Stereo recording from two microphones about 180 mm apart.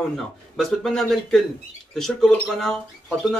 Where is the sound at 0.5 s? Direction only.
Centre (ahead or behind).